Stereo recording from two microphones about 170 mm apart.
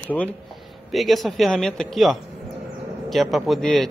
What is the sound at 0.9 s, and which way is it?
A man's voice, centre (ahead or behind).